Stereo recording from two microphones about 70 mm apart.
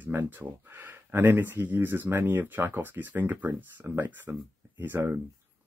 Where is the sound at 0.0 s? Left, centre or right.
Right.